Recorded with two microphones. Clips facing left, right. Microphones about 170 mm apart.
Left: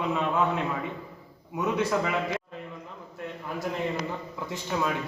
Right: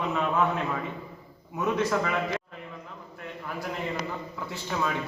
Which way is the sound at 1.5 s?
10° left (ahead or behind).